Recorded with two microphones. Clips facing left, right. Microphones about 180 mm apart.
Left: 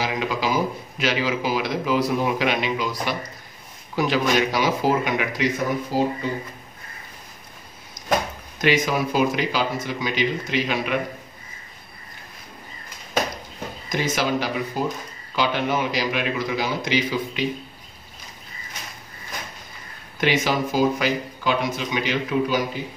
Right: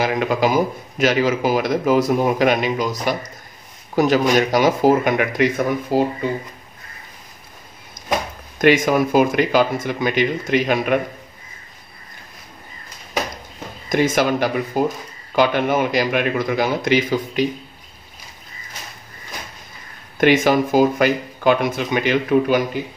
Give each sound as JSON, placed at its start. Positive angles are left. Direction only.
{"t": 0.0, "sound": "a man's voice", "side_deg": -55}
{"t": 8.5, "sound": "a man's voice", "side_deg": -50}
{"t": 13.8, "sound": "a man's voice", "side_deg": -50}
{"t": 20.2, "sound": "a man's voice", "side_deg": -50}